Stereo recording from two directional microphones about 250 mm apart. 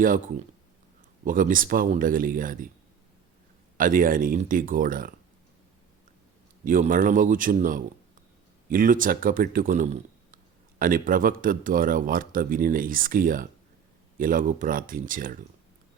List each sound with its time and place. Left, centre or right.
0.0 s speech: right
3.8 s speech: right
6.7 s speech: right